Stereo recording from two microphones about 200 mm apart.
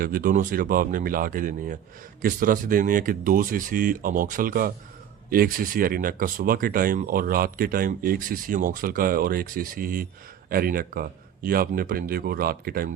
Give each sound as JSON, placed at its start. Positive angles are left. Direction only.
{"t": 0.0, "sound": "speech", "side_deg": -45}